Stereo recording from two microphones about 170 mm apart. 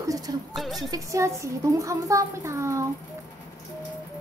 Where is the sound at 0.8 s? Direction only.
20° right (ahead or behind).